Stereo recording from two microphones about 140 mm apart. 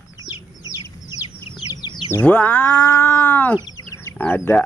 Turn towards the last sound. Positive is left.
turn(degrees=15)  # may be behind; listen again after turning